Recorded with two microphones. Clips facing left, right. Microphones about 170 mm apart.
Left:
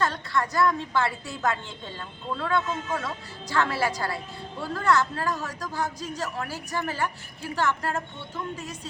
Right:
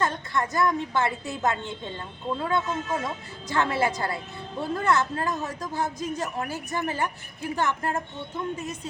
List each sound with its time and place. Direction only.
0.0 s a woman's voice: 20° right (ahead or behind)